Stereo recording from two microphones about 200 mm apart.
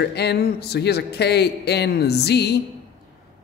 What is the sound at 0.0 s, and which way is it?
Speech, 55° left (ahead or behind).